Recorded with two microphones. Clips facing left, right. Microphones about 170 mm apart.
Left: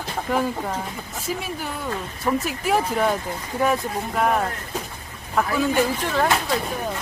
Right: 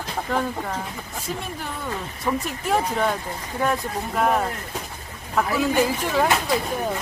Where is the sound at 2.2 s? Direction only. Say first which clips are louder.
Left 2 dB; 5° left (ahead or behind).